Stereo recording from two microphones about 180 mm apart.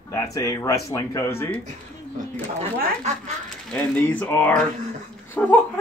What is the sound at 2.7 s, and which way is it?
Speech, 55° right (ahead or behind).